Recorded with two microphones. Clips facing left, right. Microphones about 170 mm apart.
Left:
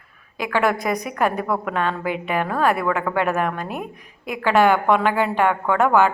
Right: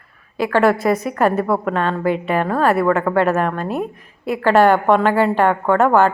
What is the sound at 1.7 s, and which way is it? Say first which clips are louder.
Speech: right 3 dB; 5° left (ahead or behind).